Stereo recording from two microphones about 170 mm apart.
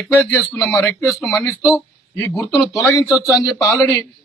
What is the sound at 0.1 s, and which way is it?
Speech, 10° left (ahead or behind).